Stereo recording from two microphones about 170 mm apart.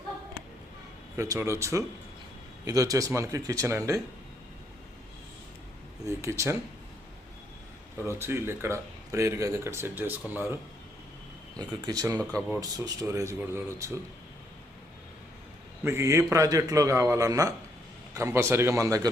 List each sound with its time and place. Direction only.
1.1 s a man's voice: 15° right (ahead or behind)
6.1 s speech: 15° right (ahead or behind)
8.0 s speech: 15° right (ahead or behind)
11.6 s a man's voice: 20° right (ahead or behind)
15.8 s a man's voice: 15° right (ahead or behind)